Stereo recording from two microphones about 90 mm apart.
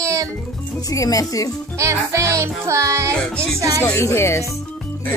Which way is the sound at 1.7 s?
35° right (ahead or behind).